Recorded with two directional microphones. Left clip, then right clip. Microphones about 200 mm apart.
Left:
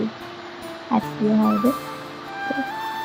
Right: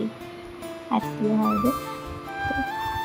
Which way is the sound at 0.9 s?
Centre (ahead or behind).